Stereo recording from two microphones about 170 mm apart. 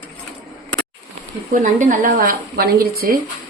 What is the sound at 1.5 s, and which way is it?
A woman's voice, 50° right (ahead or behind).